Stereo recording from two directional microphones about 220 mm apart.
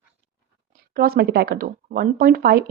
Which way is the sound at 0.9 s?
40° right (ahead or behind).